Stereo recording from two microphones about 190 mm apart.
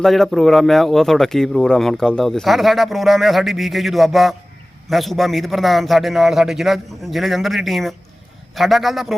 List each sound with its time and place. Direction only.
0.0 s speech: centre (ahead or behind)